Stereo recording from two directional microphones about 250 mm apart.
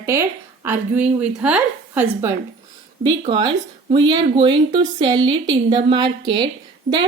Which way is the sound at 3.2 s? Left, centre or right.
Centre.